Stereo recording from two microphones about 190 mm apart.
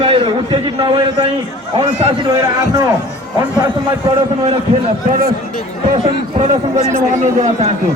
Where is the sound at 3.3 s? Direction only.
20° right (ahead or behind).